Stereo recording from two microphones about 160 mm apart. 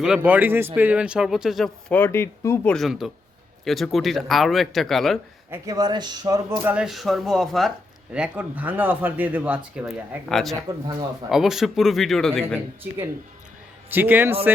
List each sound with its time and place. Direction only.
0.0 s speech: 5° right (ahead or behind)
2.0 s speech: 15° left (ahead or behind)
2.7 s speech: centre (ahead or behind)
5.5 s speech: 25° right (ahead or behind)
6.6 s speech: 10° right (ahead or behind)
13.9 s speech: 10° right (ahead or behind)